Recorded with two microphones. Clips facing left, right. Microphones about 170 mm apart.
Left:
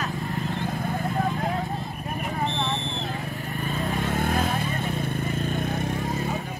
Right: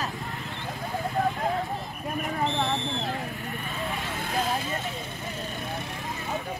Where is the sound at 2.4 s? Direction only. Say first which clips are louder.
Right 1 dB; 35° right (ahead or behind).